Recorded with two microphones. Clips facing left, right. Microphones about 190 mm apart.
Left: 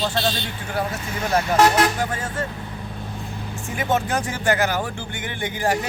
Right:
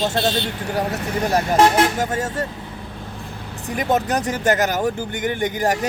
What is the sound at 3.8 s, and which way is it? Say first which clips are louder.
Speech: right 3 dB; 40° right (ahead or behind).